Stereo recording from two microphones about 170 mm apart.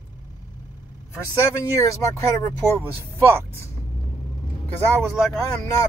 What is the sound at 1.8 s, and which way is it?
Speech, 20° left (ahead or behind).